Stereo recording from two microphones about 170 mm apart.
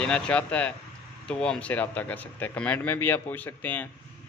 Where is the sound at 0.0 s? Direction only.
5° left (ahead or behind).